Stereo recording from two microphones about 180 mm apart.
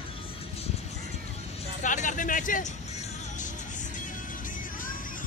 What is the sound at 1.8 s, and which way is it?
Speech, 45° left (ahead or behind).